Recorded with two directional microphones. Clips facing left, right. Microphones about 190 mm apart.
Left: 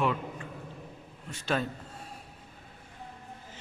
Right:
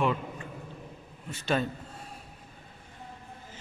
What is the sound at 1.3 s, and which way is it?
Speech, centre (ahead or behind).